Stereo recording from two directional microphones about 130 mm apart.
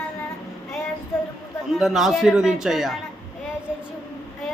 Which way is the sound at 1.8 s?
5° right (ahead or behind).